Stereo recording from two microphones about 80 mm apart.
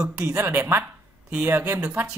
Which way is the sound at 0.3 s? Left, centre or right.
Right.